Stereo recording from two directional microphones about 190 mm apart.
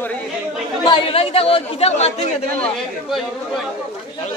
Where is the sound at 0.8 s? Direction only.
30° left (ahead or behind).